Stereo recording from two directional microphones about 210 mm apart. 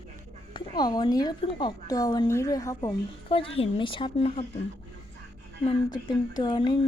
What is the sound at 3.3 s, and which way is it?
Speech, 25° left (ahead or behind).